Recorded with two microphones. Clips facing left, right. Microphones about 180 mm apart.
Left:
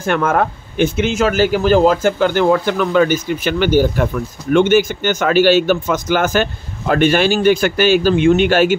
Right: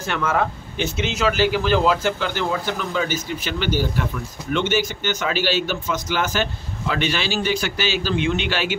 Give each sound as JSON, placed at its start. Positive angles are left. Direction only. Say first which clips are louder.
{"t": 0.0, "sound": "speech", "louder": "left 6 dB", "side_deg": 50}